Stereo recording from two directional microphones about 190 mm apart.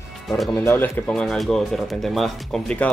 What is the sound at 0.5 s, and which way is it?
Speech, 10° left (ahead or behind).